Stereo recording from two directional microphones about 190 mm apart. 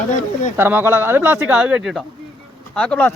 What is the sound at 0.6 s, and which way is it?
Speech, 10° right (ahead or behind).